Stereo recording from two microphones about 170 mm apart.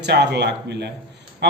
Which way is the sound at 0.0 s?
80° right.